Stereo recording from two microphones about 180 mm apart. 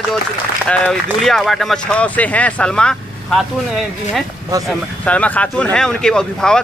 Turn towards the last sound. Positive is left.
turn(degrees=5)  # may be behind; listen again after turning